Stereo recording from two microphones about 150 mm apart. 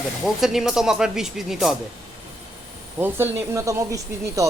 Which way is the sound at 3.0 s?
15° right (ahead or behind).